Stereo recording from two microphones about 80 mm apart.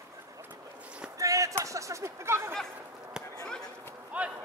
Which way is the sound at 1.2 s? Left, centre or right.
Right.